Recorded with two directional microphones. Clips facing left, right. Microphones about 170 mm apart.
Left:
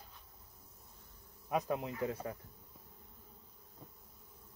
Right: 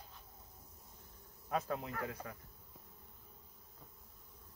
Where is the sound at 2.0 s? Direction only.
30° left (ahead or behind).